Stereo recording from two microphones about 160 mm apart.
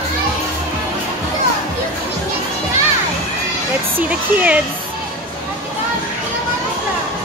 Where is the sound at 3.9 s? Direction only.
10° right (ahead or behind).